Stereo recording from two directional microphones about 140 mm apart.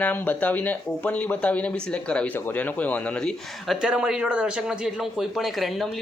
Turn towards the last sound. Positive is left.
turn(degrees=0)  # may be behind; listen again after turning